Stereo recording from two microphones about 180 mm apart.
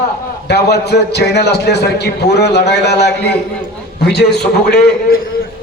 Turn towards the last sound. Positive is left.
turn(degrees=65)  # may be behind; listen again after turning